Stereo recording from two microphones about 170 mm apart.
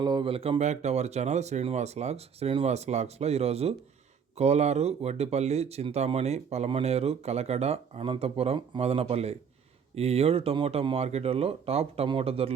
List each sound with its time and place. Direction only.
0.0 s speech: 25° right (ahead or behind)